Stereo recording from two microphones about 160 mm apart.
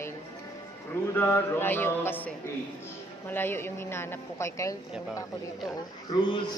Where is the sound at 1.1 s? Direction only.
15° left (ahead or behind).